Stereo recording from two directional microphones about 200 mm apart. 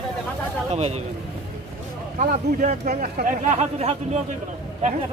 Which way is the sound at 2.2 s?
40° right (ahead or behind).